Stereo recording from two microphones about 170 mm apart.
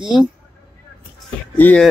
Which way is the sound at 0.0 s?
5° right (ahead or behind).